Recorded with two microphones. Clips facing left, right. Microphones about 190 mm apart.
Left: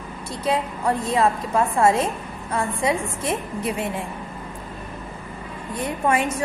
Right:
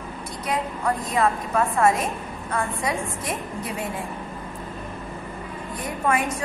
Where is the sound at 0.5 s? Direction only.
30° left (ahead or behind).